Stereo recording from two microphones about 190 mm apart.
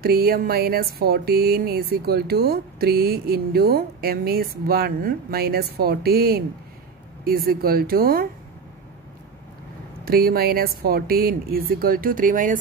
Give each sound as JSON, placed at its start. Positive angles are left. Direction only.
{"t": 0.0, "sound": "speech", "side_deg": -55}
{"t": 10.0, "sound": "speech", "side_deg": -50}